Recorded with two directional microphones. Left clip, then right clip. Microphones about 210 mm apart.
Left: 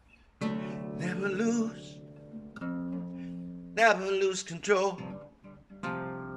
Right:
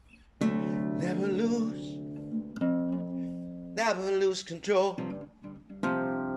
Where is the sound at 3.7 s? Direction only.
25° right (ahead or behind).